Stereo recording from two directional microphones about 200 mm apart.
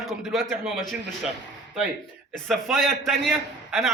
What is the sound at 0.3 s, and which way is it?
Speech, 5° right (ahead or behind).